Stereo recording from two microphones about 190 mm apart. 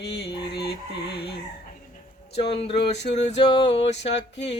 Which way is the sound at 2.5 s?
30° left (ahead or behind).